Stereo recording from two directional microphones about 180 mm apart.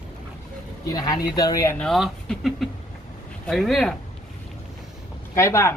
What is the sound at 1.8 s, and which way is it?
Speech, centre (ahead or behind).